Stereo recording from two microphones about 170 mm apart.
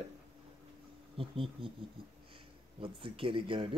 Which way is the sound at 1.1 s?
30° right (ahead or behind).